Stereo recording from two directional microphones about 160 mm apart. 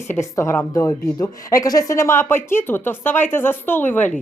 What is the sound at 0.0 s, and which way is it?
A woman's voice, 15° left (ahead or behind).